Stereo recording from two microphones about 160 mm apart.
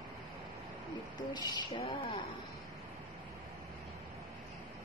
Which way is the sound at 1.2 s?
30° left (ahead or behind).